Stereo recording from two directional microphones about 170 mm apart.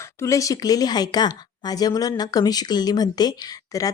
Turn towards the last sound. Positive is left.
turn(degrees=20)  # may be behind; listen again after turning